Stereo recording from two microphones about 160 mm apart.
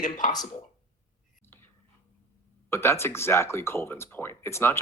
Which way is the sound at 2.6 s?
15° left (ahead or behind).